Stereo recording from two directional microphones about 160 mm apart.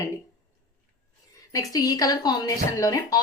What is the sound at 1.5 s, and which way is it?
A woman's voice, 20° left (ahead or behind).